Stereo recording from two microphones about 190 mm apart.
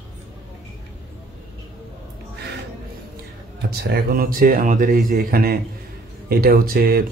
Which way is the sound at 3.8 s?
55° right (ahead or behind).